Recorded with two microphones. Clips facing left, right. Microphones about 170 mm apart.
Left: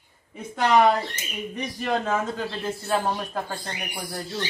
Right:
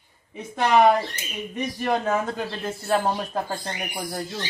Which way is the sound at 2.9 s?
30° right (ahead or behind).